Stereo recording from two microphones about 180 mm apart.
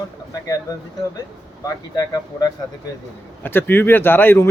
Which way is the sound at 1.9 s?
20° left (ahead or behind).